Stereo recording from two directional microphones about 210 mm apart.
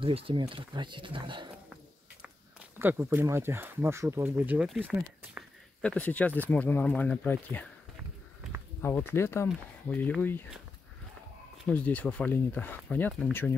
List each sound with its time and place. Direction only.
0.0 s speech: 25° right (ahead or behind)
2.8 s speech: 10° right (ahead or behind); by 7.7 s 5° left (ahead or behind)
9.1 s speech: 10° left (ahead or behind)
11.7 s speech: 5° left (ahead or behind)